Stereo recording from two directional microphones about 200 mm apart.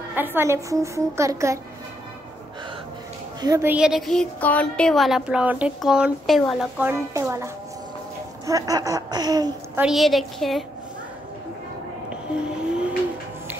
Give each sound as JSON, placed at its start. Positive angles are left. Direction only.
{"t": 0.1, "sound": "a child's voice", "side_deg": -10}
{"t": 3.3, "sound": "a woman's voice", "side_deg": -15}
{"t": 8.5, "sound": "a sound", "side_deg": -15}
{"t": 9.8, "sound": "a woman's voice", "side_deg": 0}